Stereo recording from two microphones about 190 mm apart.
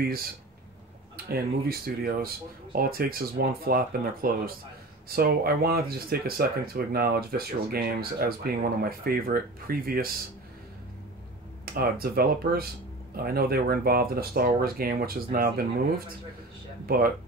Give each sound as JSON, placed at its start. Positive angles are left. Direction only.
{"t": 1.1, "sound": "speech", "side_deg": -55}
{"t": 11.6, "sound": "speech", "side_deg": -55}
{"t": 16.8, "sound": "speech", "side_deg": -50}